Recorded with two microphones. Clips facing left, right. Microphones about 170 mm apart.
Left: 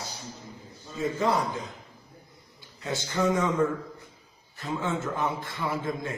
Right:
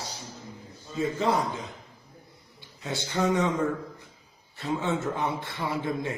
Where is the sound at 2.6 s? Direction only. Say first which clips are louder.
Left 1 dB; 25° right (ahead or behind).